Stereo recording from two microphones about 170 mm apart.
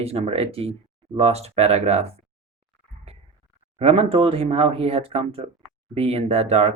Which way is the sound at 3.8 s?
35° right (ahead or behind).